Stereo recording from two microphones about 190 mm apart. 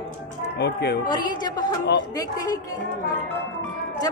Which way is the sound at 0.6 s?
60° left (ahead or behind).